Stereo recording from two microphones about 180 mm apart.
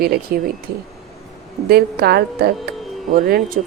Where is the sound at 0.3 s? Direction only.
60° right (ahead or behind).